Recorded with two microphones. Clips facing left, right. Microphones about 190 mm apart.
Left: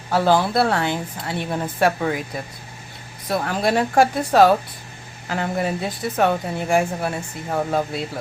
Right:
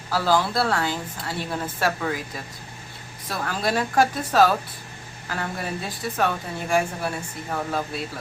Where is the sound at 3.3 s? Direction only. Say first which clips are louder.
Left 5 dB; 25° left (ahead or behind).